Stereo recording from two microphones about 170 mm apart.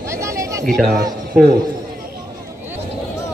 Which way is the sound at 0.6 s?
Centre (ahead or behind).